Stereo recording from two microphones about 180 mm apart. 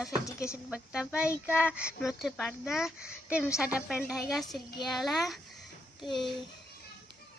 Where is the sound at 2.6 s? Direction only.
5° right (ahead or behind).